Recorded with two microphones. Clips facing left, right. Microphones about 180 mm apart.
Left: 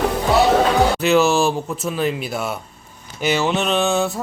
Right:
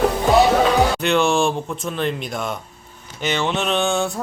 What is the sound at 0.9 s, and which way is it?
Speech, 5° left (ahead or behind).